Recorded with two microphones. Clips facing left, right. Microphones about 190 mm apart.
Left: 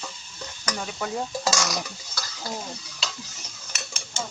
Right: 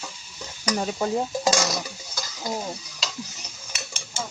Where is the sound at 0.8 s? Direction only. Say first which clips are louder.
Right 6 dB; 35° right (ahead or behind).